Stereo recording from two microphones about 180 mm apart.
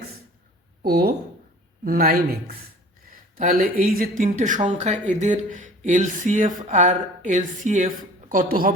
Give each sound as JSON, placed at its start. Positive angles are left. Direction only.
{"t": 0.8, "sound": "speech", "side_deg": -60}